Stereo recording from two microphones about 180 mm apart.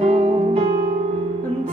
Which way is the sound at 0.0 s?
30° right (ahead or behind).